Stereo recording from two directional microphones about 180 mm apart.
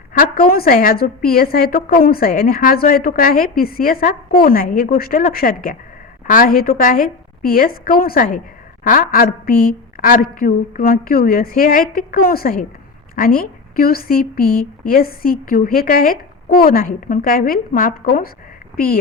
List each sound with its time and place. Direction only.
0.1 s a woman's voice: 55° left (ahead or behind)